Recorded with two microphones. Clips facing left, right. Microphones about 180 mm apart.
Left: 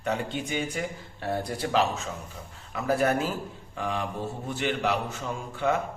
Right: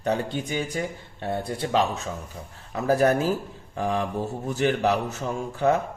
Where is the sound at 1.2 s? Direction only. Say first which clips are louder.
Right 2 dB; 25° right (ahead or behind); by 5.7 s 40° right (ahead or behind).